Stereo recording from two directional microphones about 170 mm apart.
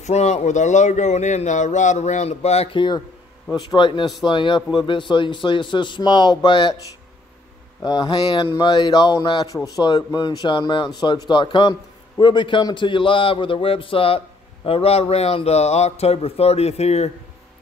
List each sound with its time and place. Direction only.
0.0 s speech: 40° left (ahead or behind)
7.8 s a man's voice: 25° left (ahead or behind)